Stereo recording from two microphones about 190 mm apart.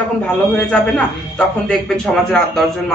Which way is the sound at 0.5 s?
5° left (ahead or behind).